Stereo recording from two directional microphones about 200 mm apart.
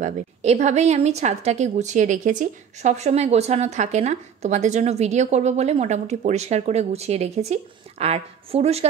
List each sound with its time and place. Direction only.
0.0 s a woman's voice: 35° right (ahead or behind)